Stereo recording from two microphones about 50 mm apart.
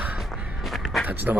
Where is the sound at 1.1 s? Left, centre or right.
Right.